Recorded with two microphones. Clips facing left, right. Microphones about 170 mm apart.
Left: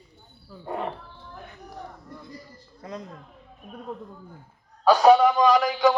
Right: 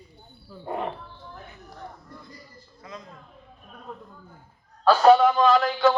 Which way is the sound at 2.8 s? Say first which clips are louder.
Left 5 dB; 45° left (ahead or behind).